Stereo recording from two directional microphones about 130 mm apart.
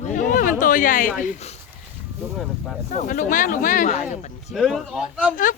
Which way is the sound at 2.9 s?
75° left (ahead or behind).